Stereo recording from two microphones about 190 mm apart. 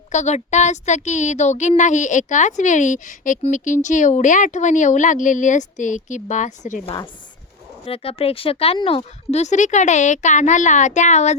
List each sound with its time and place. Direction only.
0.1 s speech: 35° left (ahead or behind)